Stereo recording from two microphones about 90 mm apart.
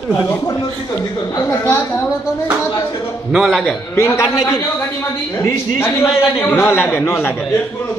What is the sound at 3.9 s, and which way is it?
Speech, 30° left (ahead or behind).